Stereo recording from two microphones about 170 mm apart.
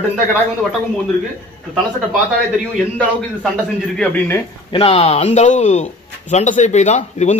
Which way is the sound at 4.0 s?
10° left (ahead or behind).